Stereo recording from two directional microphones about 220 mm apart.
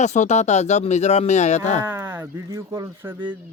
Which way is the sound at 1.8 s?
10° right (ahead or behind).